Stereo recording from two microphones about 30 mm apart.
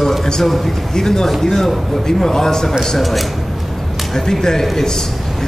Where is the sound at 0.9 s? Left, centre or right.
Centre.